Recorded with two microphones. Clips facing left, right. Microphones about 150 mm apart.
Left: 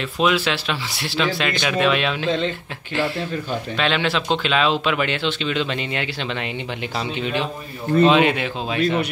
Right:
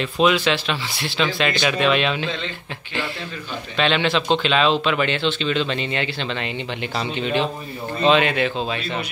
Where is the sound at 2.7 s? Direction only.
5° left (ahead or behind).